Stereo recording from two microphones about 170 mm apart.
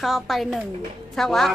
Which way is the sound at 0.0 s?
Centre (ahead or behind).